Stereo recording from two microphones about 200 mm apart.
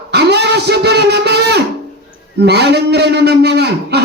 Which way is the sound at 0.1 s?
55° right (ahead or behind).